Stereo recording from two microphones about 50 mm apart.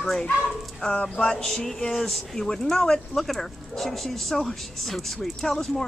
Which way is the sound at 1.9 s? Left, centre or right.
Centre.